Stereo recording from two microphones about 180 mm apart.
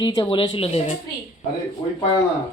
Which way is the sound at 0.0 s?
25° left (ahead or behind).